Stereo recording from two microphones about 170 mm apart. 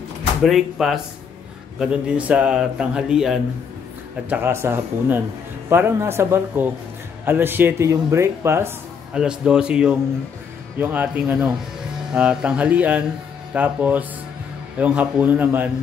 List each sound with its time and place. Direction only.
0.4 s a man's voice: centre (ahead or behind)
4.3 s a man's voice: 15° right (ahead or behind)
9.1 s a man's voice: 5° right (ahead or behind)